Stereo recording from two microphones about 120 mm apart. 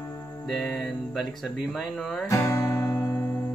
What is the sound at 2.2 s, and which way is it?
Music, 25° left (ahead or behind).